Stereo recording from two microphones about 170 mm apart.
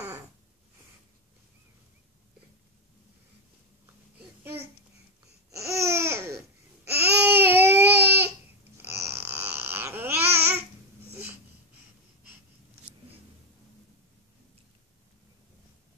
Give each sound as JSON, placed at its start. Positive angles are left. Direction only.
{"t": 4.4, "sound": "babbling", "side_deg": -10}
{"t": 7.2, "sound": "baby cry", "side_deg": -10}
{"t": 9.0, "sound": "babbling", "side_deg": -15}